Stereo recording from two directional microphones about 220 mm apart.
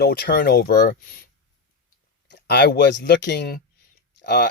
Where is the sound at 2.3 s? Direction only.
50° left (ahead or behind).